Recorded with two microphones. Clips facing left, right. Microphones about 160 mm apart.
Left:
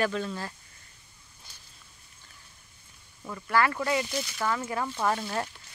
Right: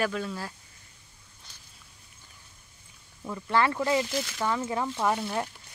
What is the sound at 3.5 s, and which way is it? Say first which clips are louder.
Speech: right 1 dB; 25° right (ahead or behind).